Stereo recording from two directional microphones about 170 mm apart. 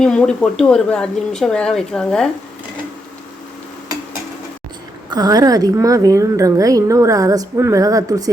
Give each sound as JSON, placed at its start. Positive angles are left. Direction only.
{"t": 0.0, "sound": "speech", "side_deg": 5}
{"t": 5.1, "sound": "a woman's voice", "side_deg": -20}